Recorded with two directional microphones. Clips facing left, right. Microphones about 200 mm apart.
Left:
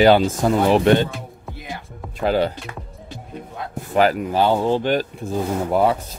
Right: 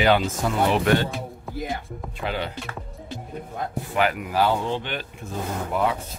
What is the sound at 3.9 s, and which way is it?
Speech, 35° left (ahead or behind).